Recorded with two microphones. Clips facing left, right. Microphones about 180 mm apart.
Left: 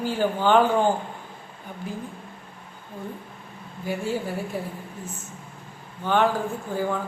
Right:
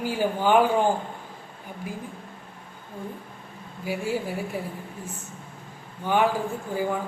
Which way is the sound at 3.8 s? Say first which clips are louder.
Even; 10° right (ahead or behind).